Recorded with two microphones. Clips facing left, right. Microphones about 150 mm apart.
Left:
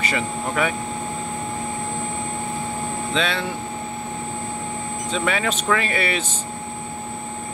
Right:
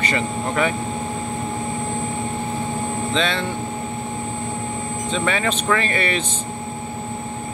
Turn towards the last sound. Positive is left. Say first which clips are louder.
# right 1 dB
turn(degrees=5)  # may be behind; listen again after turning